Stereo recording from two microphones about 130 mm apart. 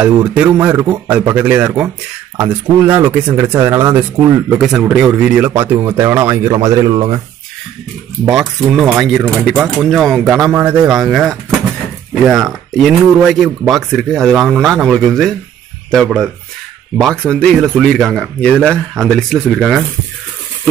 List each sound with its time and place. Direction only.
0.0 s a man's voice: 10° right (ahead or behind)
4.6 s a man's voice: 5° right (ahead or behind); by 7.2 s 35° right (ahead or behind)
8.3 s speech: 5° right (ahead or behind)
12.3 s speech: 5° right (ahead or behind)